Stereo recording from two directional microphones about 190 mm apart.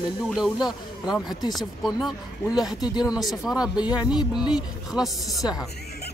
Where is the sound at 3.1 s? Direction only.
Centre (ahead or behind).